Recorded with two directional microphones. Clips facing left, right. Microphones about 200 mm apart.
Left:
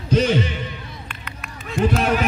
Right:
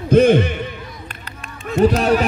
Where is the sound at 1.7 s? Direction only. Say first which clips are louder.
Right 5 dB; 40° right (ahead or behind).